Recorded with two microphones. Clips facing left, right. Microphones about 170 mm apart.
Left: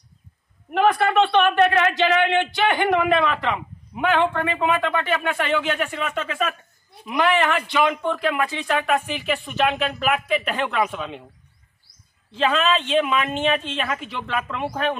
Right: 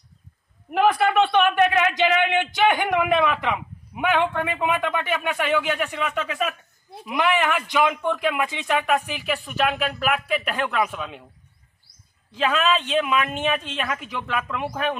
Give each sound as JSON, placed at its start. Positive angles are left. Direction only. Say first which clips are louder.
{"t": 0.7, "sound": "a man's voice", "louder": "even", "side_deg": 0}
{"t": 12.3, "sound": "a man's voice", "louder": "left 1 dB", "side_deg": -10}